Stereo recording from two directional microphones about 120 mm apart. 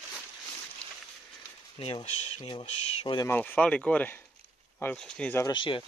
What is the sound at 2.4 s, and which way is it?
Speech, 45° left (ahead or behind).